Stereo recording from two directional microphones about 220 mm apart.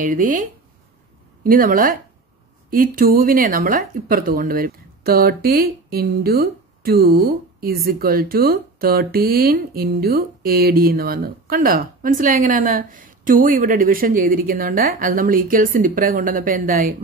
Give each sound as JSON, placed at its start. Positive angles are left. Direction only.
{"t": 0.0, "sound": "speech", "side_deg": -35}